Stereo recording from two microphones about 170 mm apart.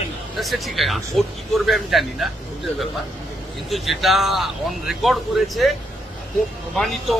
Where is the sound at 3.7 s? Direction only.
Centre (ahead or behind).